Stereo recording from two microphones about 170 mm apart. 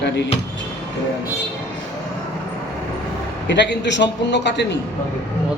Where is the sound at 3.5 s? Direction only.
90° left.